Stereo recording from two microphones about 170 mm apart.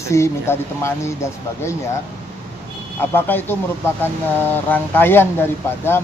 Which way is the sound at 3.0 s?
15° left (ahead or behind).